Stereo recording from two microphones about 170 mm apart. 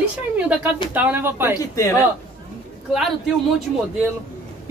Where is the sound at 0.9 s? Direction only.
10° right (ahead or behind).